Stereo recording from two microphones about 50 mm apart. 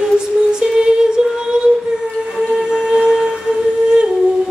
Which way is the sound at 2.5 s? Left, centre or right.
Centre.